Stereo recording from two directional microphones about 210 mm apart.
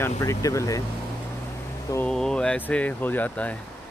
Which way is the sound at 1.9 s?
5° left (ahead or behind).